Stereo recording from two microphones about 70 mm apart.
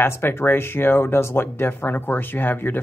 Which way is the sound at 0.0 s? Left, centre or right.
Left.